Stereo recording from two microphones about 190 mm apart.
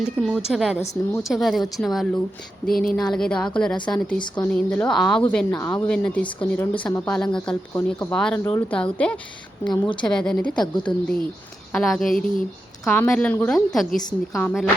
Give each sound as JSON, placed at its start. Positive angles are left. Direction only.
{"t": 0.2, "sound": "a woman's voice", "side_deg": 0}
{"t": 2.6, "sound": "a sound", "side_deg": 50}
{"t": 3.1, "sound": "a woman's voice", "side_deg": 5}
{"t": 9.6, "sound": "a woman's voice", "side_deg": 25}
{"t": 10.0, "sound": "a woman's voice", "side_deg": 5}